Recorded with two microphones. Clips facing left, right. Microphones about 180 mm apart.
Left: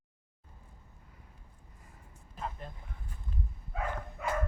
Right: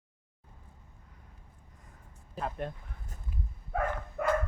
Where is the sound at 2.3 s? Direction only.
70° right (ahead or behind).